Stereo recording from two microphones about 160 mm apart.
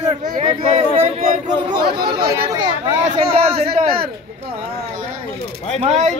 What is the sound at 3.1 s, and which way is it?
Speech, 40° right (ahead or behind).